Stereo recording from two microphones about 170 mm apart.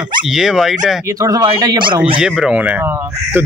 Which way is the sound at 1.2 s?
20° right (ahead or behind).